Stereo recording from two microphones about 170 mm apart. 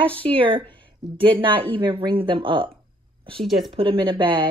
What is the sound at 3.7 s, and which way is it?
Speech, 30° right (ahead or behind).